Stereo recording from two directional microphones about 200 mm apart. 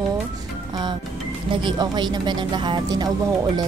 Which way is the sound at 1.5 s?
20° right (ahead or behind).